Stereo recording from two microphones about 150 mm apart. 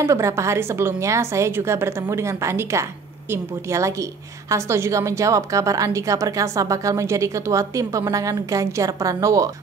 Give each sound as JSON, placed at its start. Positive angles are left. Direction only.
{"t": 0.0, "sound": "a woman's voice", "side_deg": -20}